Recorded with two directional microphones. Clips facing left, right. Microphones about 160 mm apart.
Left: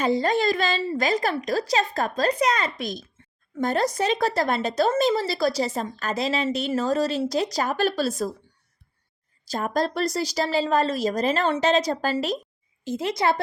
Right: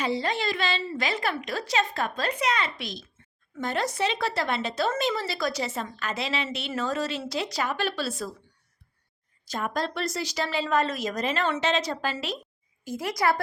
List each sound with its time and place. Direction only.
0.0 s speech: 45° left (ahead or behind)
9.5 s speech: 40° left (ahead or behind)
12.8 s speech: 25° left (ahead or behind)